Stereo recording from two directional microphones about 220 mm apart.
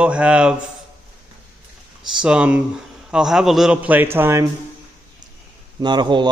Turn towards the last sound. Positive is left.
turn(degrees=-20)  # may be behind; listen again after turning